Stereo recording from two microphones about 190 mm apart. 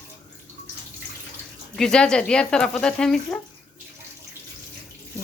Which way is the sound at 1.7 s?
5° left (ahead or behind).